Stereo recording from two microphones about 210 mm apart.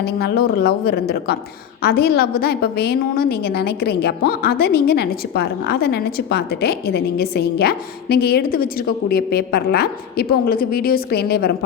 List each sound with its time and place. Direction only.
0.2 s a woman's voice: 45° left (ahead or behind)